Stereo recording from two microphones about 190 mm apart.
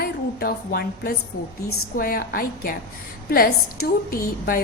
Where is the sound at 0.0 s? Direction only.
55° left (ahead or behind).